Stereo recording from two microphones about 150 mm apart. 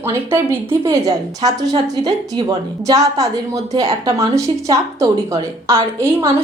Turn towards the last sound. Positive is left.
turn(degrees=-15)  # may be behind; listen again after turning